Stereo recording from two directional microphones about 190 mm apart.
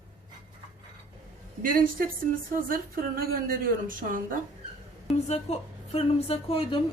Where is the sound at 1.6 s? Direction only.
50° right (ahead or behind).